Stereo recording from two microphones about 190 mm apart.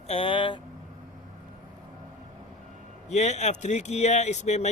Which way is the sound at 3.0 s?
35° left (ahead or behind).